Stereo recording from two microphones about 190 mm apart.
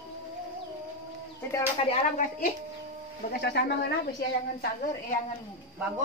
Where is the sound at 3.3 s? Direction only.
55° left (ahead or behind).